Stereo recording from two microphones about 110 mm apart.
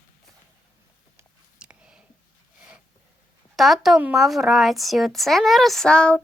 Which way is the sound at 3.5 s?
Centre (ahead or behind).